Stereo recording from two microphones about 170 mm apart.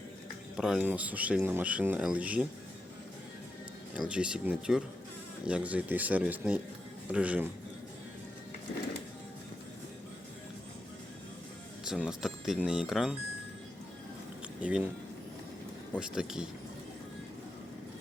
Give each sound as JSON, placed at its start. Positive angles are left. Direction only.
{"t": 0.5, "sound": "speech", "side_deg": -5}
{"t": 3.9, "sound": "speech", "side_deg": -5}
{"t": 11.9, "sound": "speech", "side_deg": -5}
{"t": 14.6, "sound": "speech", "side_deg": -5}
{"t": 16.0, "sound": "speech", "side_deg": -5}